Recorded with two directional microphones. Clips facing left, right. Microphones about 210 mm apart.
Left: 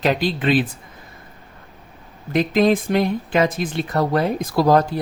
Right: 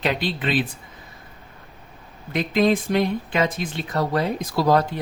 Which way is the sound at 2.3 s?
45° left (ahead or behind).